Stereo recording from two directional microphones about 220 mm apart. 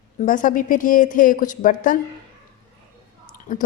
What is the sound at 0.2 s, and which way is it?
Speech, 35° left (ahead or behind).